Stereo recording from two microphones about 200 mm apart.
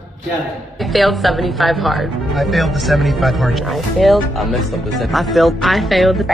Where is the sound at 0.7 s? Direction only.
Centre (ahead or behind).